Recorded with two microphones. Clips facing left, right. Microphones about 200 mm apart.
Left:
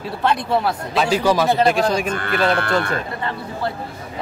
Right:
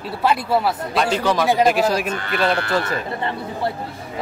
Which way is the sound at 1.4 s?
10° right (ahead or behind).